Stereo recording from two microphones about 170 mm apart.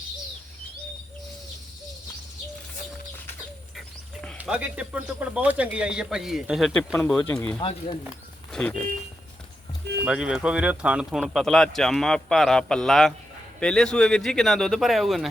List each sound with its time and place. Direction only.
4.4 s speech: 5° right (ahead or behind)
7.6 s speech: 35° left (ahead or behind)
8.5 s speech: 5° left (ahead or behind)
10.0 s speech: 5° right (ahead or behind)